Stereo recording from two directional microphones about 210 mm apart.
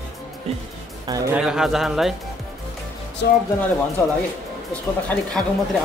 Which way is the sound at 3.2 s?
55° left (ahead or behind).